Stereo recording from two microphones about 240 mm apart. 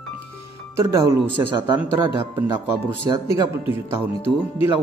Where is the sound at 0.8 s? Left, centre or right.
Centre.